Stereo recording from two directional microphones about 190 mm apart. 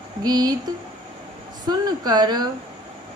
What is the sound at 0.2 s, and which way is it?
Speech, 20° right (ahead or behind).